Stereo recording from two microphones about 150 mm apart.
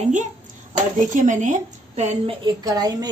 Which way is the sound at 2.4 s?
25° right (ahead or behind).